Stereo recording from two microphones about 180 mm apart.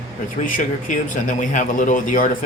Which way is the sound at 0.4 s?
45° left (ahead or behind).